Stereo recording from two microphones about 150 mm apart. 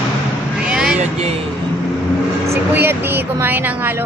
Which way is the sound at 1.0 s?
45° right (ahead or behind).